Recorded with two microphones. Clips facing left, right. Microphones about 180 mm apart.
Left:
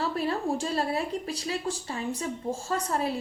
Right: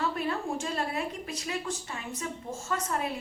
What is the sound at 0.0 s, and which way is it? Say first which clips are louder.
Speech: left 3 dB; 35° left (ahead or behind).